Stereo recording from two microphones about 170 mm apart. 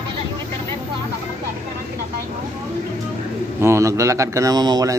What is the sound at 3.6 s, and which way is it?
A man's voice, 15° right (ahead or behind).